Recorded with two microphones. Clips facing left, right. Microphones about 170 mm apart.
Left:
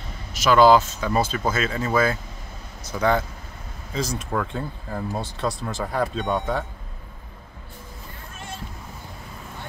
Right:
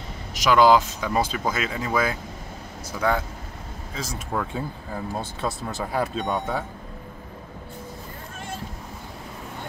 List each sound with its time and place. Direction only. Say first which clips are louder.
0.4 s speech: left 2 dB; 15° right (ahead or behind)
3.0 s speech: left 3 dB; 5° right (ahead or behind)